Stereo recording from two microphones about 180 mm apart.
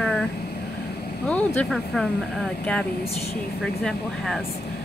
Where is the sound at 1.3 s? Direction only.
5° left (ahead or behind).